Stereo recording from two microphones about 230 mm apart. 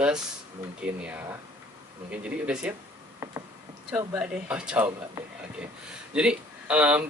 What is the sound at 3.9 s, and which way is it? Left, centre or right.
Speech, centre.